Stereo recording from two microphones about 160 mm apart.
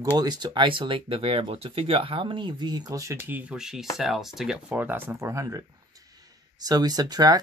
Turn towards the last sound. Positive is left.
turn(degrees=-25)  # may be behind; listen again after turning